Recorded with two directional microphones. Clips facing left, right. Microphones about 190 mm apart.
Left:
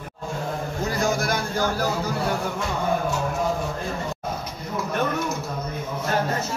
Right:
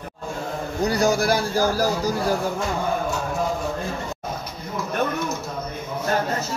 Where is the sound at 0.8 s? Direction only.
40° right (ahead or behind).